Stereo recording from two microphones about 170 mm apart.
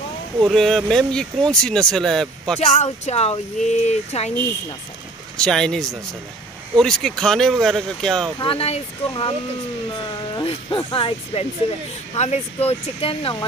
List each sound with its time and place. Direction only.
0.4 s speech: centre (ahead or behind)
2.6 s speech: 40° left (ahead or behind)
5.4 s speech: 5° left (ahead or behind)
8.4 s speech: 35° left (ahead or behind)
10.3 s speech: 30° left (ahead or behind)